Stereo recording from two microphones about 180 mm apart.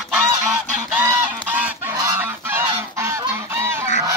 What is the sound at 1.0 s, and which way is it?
Goose, 10° right (ahead or behind).